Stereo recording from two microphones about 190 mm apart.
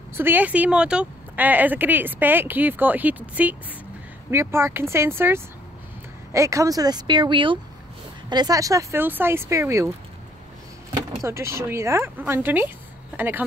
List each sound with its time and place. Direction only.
0.1 s speech: 10° right (ahead or behind)
11.2 s speech: 15° right (ahead or behind)